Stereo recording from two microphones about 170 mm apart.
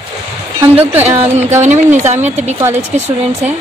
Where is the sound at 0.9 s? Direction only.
10° right (ahead or behind).